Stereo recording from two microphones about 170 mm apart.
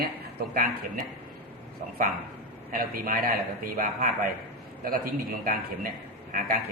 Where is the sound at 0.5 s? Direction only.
60° right (ahead or behind).